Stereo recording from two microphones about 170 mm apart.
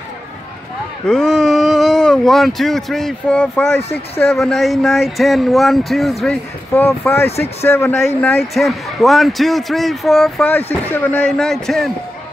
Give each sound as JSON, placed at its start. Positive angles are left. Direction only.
{"t": 1.0, "sound": "speech", "side_deg": 5}
{"t": 7.2, "sound": "speech", "side_deg": 40}
{"t": 7.6, "sound": "speech", "side_deg": 15}
{"t": 8.5, "sound": "speech", "side_deg": 0}